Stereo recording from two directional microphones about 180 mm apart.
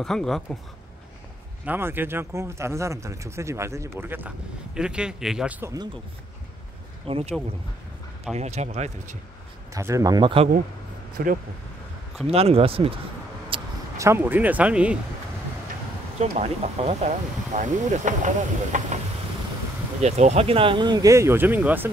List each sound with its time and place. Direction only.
0.0 s a man's voice: 5° left (ahead or behind)
1.7 s a man's voice: 10° right (ahead or behind)
7.1 s speech: 30° right (ahead or behind)
8.4 s speech: 40° right (ahead or behind)
9.8 s speech: 15° right (ahead or behind)
11.2 s speech: 55° right (ahead or behind)
12.3 s speech: 35° right (ahead or behind)
13.5 s a sound: 30° right (ahead or behind)
13.9 s speech: 15° right (ahead or behind)
16.2 s speech: 35° right (ahead or behind)
20.0 s speech: 40° right (ahead or behind); by 21.9 s 10° right (ahead or behind)